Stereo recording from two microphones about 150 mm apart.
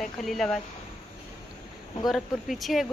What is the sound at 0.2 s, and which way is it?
Speech, centre (ahead or behind).